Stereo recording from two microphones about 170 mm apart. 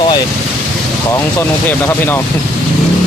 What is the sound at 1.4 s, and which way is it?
Speech, 15° left (ahead or behind).